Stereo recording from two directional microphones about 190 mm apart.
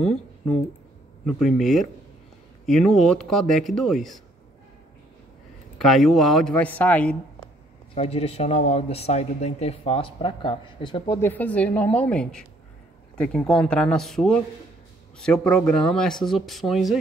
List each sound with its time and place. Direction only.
1.2 s speech: centre (ahead or behind)
5.8 s speech: centre (ahead or behind)
7.9 s speech: 30° left (ahead or behind)
11.1 s a woman's voice: 10° left (ahead or behind)